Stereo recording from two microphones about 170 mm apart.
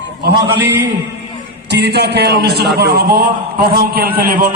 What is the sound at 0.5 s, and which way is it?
Speech, 15° right (ahead or behind).